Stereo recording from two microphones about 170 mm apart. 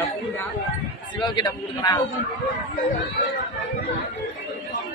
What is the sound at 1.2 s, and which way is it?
Speech, 25° left (ahead or behind).